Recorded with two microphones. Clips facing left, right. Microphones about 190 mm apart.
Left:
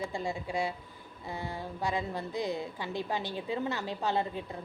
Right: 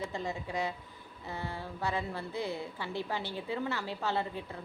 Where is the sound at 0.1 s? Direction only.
10° left (ahead or behind).